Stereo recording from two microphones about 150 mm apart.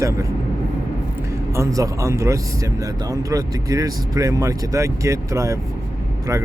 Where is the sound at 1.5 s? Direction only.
20° right (ahead or behind).